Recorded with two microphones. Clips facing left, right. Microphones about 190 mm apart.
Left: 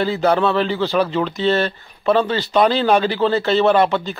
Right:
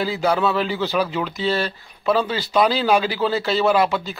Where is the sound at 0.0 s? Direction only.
5° right (ahead or behind).